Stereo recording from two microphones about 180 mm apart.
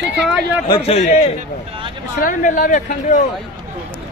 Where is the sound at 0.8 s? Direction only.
35° left (ahead or behind).